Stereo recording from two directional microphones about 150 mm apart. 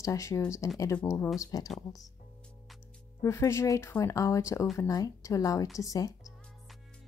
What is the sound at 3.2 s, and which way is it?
Speech, 20° left (ahead or behind).